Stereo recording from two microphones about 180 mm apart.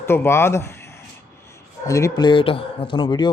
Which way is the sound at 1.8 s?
20° left (ahead or behind).